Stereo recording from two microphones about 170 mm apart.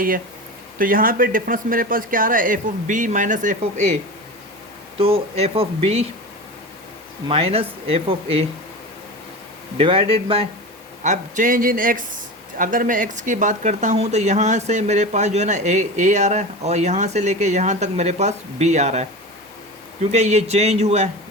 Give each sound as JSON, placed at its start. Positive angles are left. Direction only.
{"t": 0.8, "sound": "speech", "side_deg": -55}
{"t": 4.9, "sound": "speech", "side_deg": -35}
{"t": 7.3, "sound": "speech", "side_deg": -35}
{"t": 9.7, "sound": "speech", "side_deg": -35}
{"t": 11.0, "sound": "speech", "side_deg": -45}